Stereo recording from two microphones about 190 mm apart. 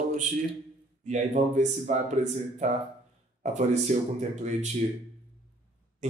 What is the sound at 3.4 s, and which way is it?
Speech, 40° right (ahead or behind).